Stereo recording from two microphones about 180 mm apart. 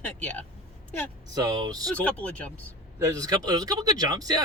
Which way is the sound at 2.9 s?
20° right (ahead or behind).